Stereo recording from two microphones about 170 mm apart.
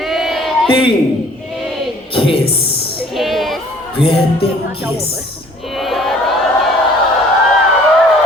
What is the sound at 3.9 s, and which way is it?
Speech, 35° left (ahead or behind).